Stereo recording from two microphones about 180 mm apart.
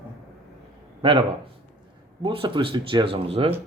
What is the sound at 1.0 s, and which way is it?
Speech, 30° right (ahead or behind).